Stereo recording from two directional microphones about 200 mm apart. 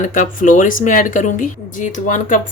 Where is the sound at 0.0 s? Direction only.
40° left (ahead or behind).